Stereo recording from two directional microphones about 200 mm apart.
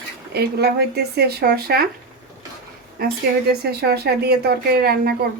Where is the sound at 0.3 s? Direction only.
55° right (ahead or behind).